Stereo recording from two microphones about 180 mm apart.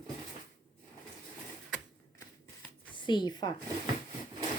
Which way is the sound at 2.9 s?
25° left (ahead or behind).